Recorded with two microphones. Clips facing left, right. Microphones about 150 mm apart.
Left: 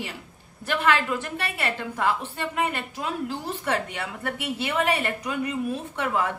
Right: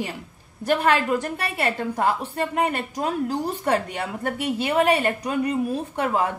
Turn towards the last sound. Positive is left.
turn(degrees=-35)  # may be behind; listen again after turning